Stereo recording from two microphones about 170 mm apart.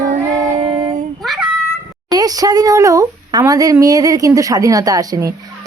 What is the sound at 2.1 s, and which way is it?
Speech, 20° right (ahead or behind).